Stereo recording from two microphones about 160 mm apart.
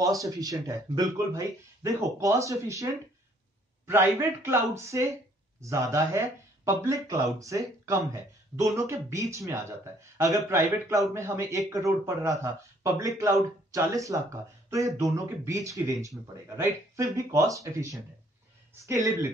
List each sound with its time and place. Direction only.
0.0 s a man's voice: 20° right (ahead or behind)